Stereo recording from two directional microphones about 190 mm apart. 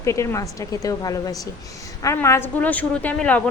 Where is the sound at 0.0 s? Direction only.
15° left (ahead or behind).